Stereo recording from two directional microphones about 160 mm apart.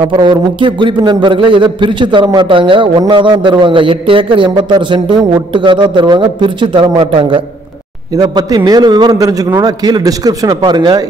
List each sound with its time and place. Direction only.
0.0 s a man's voice: 30° right (ahead or behind)